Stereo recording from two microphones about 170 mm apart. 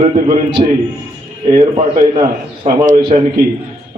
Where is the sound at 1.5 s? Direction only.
40° right (ahead or behind).